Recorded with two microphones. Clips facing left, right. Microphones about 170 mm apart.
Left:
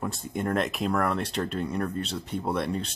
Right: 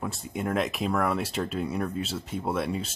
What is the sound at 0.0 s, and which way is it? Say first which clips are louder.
Speech: left 1 dB; centre (ahead or behind).